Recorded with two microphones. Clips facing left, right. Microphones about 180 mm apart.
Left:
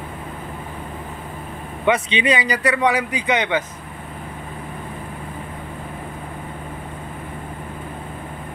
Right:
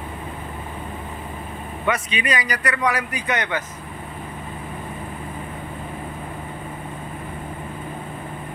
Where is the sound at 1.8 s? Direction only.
25° left (ahead or behind).